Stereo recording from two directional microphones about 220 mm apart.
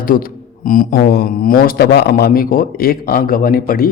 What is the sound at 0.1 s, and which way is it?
A man's voice, 40° left (ahead or behind).